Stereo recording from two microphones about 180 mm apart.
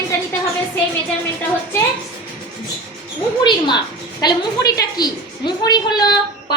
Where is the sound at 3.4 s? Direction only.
25° left (ahead or behind).